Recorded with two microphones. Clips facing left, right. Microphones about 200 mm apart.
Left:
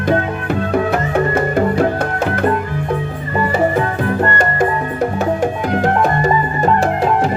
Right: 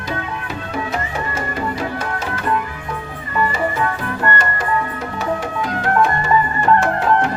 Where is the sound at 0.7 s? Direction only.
60° left (ahead or behind).